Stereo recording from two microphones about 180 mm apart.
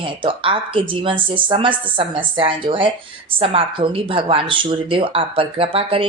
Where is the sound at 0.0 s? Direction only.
30° right (ahead or behind).